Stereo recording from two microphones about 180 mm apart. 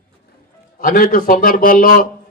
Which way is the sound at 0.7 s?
50° left (ahead or behind).